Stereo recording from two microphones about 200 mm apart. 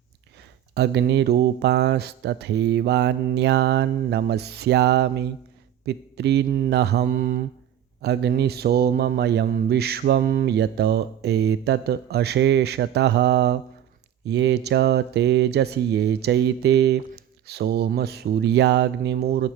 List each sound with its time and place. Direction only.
0.7 s speech: 60° right (ahead or behind)
8.0 s speech: 55° right (ahead or behind)